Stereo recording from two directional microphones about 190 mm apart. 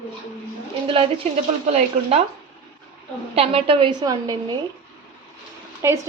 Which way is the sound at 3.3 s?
30° right (ahead or behind).